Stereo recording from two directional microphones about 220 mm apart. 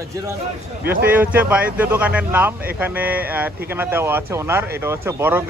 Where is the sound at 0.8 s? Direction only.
40° right (ahead or behind).